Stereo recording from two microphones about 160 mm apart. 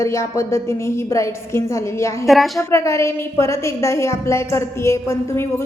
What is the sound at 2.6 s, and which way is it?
A woman's voice, 15° left (ahead or behind).